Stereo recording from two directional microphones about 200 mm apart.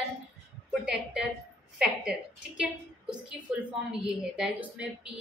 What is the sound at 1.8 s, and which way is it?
A woman's voice, 5° right (ahead or behind).